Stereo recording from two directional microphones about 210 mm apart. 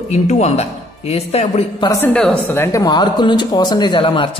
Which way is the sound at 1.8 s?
15° left (ahead or behind).